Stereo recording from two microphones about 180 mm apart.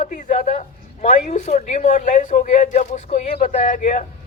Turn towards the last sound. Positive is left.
turn(degrees=45)  # may be behind; listen again after turning